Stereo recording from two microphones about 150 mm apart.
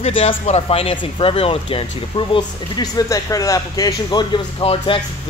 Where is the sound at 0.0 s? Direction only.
40° left (ahead or behind).